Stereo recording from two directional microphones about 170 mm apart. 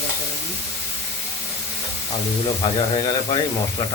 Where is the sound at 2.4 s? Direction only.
30° left (ahead or behind).